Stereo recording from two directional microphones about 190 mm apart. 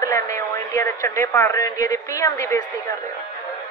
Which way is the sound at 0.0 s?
15° left (ahead or behind).